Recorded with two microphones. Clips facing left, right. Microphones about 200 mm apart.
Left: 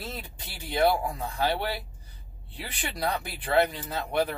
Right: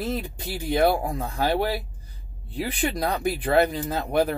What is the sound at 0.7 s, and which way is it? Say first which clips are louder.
Speech: right 3 dB; 45° right (ahead or behind).